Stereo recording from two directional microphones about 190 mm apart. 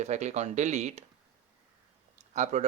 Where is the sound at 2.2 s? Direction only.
40° right (ahead or behind).